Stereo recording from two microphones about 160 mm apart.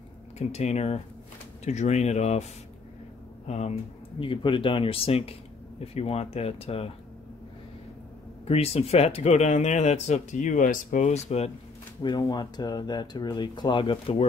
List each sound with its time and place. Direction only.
0.4 s speech: 45° left (ahead or behind)
3.4 s speech: 45° left (ahead or behind)
4.2 s speech: 35° left (ahead or behind)
8.5 s speech: 40° left (ahead or behind)
12.0 s speech: 25° left (ahead or behind)